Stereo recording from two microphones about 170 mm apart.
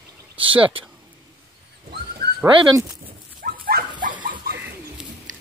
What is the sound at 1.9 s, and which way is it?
Dog, 70° right (ahead or behind).